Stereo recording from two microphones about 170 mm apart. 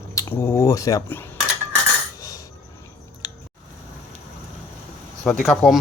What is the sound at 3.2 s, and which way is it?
Chewing, 25° left (ahead or behind).